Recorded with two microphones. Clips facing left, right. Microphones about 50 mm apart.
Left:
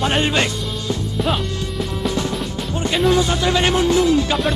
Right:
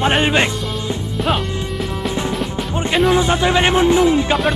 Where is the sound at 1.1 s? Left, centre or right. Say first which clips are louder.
Right 2 dB; centre.